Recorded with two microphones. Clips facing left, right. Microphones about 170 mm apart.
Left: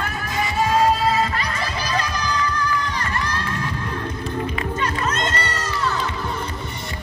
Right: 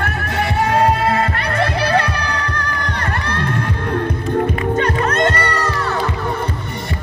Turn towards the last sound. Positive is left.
turn(degrees=-60)  # may be behind; listen again after turning